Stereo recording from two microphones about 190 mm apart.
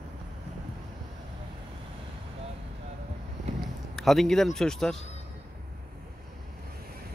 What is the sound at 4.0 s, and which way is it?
Speech, centre (ahead or behind).